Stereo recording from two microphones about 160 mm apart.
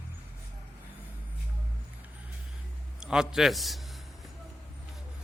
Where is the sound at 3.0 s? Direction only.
5° right (ahead or behind).